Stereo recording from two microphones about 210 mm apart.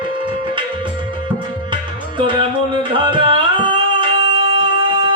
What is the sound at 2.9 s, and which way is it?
Music, 25° right (ahead or behind).